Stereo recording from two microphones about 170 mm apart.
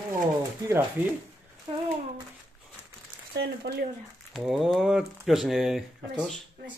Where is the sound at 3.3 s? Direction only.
80° right.